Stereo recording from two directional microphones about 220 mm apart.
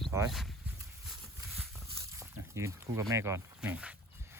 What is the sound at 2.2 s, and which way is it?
Speech, 15° right (ahead or behind).